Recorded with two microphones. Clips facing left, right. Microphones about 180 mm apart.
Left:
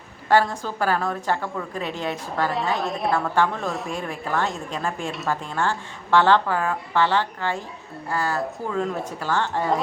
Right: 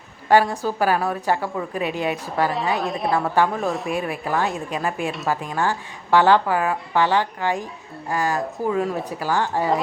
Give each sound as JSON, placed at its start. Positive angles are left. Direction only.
{"t": 0.3, "sound": "a woman's voice", "side_deg": -15}
{"t": 2.8, "sound": "a woman's voice", "side_deg": 0}
{"t": 3.3, "sound": "a woman's voice", "side_deg": -10}